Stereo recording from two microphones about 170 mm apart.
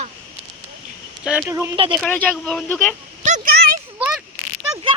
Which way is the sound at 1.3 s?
5° right (ahead or behind).